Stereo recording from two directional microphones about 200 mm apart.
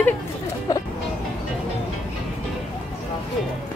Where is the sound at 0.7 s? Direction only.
20° left (ahead or behind).